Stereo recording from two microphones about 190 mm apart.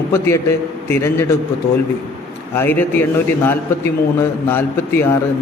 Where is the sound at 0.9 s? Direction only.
15° left (ahead or behind).